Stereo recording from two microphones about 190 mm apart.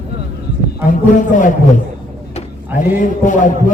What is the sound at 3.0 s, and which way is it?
Speech, 40° left (ahead or behind).